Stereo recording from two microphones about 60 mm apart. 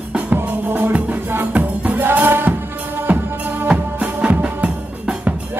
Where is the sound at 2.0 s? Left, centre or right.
Right.